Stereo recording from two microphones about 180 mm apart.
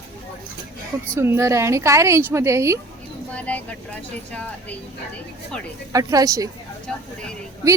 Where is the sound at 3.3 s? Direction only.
5° left (ahead or behind).